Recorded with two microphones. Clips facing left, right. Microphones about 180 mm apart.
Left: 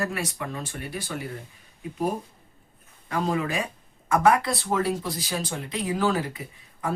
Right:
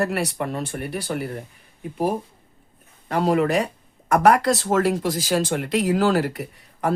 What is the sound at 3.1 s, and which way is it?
Speech, 65° right (ahead or behind).